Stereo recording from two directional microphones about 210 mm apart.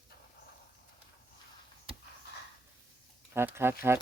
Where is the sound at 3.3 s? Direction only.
10° right (ahead or behind).